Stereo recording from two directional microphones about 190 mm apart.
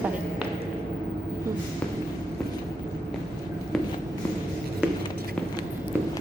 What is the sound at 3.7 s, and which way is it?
Walk, centre (ahead or behind).